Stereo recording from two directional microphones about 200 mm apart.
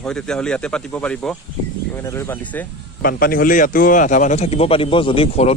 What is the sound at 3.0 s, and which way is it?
Speech, 50° left (ahead or behind).